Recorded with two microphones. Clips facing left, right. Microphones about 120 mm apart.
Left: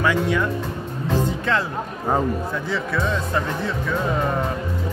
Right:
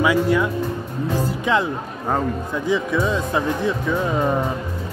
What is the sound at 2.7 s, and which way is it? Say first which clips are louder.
Speech: right 5 dB; 15° right (ahead or behind).